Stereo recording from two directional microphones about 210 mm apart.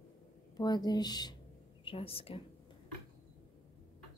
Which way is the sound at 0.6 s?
20° left (ahead or behind).